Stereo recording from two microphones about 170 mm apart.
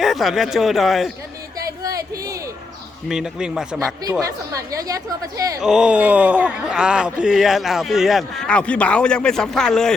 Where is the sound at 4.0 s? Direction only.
20° right (ahead or behind).